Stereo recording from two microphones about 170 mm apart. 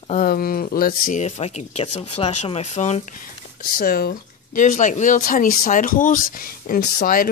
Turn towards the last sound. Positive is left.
turn(degrees=60)  # may be behind; listen again after turning